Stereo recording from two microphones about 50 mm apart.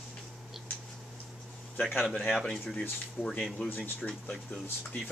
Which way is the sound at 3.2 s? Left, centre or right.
Centre.